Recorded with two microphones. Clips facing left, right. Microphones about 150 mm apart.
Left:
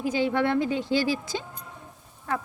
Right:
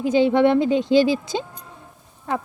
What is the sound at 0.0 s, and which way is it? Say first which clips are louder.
Speech: right 8 dB; 25° right (ahead or behind).